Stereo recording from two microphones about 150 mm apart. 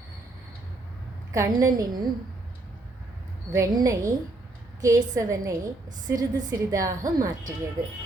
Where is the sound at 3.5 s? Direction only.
20° right (ahead or behind).